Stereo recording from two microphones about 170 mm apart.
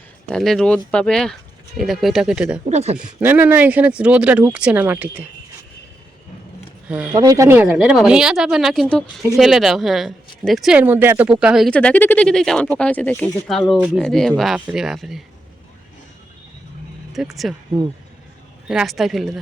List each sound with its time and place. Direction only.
0.3 s speech: centre (ahead or behind)
2.6 s speech: 40° right (ahead or behind)
3.0 s speech: 10° right (ahead or behind)
6.8 s speech: 5° right (ahead or behind)
7.1 s speech: 20° right (ahead or behind); by 15.2 s centre (ahead or behind)
17.2 s speech: 5° right (ahead or behind)
18.7 s speech: centre (ahead or behind)